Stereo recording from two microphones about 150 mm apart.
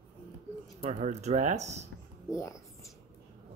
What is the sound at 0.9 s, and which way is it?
Speech, 50° right (ahead or behind).